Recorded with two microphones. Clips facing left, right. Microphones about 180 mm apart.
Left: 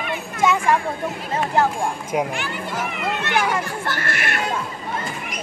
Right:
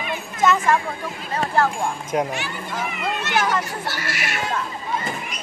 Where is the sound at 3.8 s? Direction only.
55° left (ahead or behind).